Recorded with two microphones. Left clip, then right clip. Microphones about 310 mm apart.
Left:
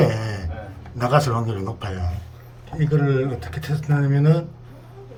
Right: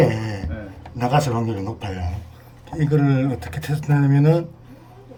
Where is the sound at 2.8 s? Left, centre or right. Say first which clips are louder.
Right 1 dB; centre.